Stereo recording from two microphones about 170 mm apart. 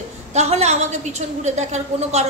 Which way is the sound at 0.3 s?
40° right (ahead or behind).